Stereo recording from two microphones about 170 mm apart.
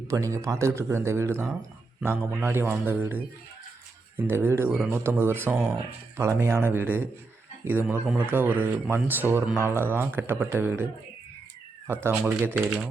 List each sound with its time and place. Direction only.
0.1 s speech: 20° right (ahead or behind)
11.9 s speech: 15° right (ahead or behind)